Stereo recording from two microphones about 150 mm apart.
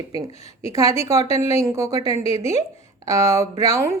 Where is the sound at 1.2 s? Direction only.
45° left (ahead or behind).